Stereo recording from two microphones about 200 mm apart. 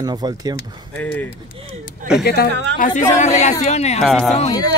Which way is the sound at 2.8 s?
40° left (ahead or behind).